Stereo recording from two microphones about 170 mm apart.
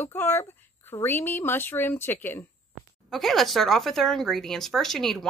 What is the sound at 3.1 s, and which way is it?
Speech, centre (ahead or behind).